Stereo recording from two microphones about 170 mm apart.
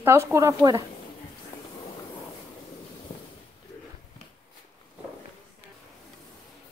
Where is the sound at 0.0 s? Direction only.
15° right (ahead or behind).